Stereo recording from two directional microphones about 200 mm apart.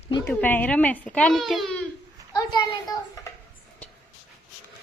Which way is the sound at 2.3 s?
20° left (ahead or behind).